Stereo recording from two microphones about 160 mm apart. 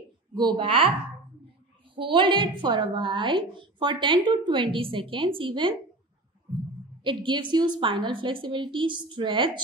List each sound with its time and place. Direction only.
0.3 s a woman's voice: 30° right (ahead or behind)
2.0 s a woman's voice: 30° right (ahead or behind)
7.0 s a woman's voice: 30° right (ahead or behind)